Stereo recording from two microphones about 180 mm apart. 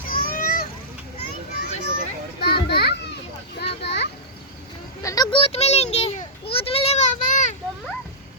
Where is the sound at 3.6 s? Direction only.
65° left (ahead or behind).